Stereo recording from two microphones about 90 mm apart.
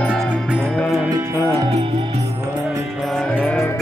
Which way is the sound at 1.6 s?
45° right (ahead or behind).